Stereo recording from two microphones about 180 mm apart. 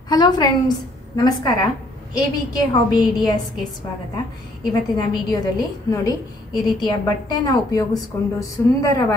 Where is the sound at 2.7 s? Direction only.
25° left (ahead or behind).